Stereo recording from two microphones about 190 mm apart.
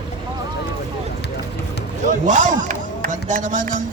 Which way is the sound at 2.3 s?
40° right (ahead or behind).